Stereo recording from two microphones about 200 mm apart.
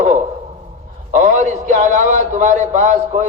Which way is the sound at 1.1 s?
40° right (ahead or behind).